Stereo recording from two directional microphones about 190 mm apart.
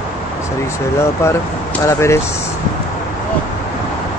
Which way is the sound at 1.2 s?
15° left (ahead or behind).